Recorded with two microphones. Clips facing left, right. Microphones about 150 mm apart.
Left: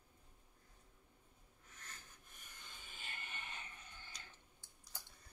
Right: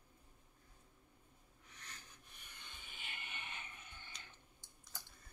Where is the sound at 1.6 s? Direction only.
50° left (ahead or behind).